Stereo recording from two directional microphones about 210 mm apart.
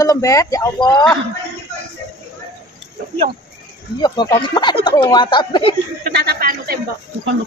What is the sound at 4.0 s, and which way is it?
Speech, 20° left (ahead or behind).